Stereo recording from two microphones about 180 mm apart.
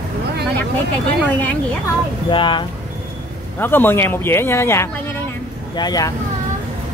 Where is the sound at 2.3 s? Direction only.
25° left (ahead or behind).